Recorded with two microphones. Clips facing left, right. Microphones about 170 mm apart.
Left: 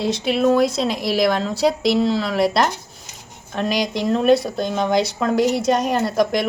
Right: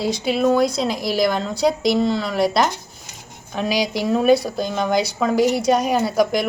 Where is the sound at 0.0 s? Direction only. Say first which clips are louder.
Left 1 dB; centre (ahead or behind).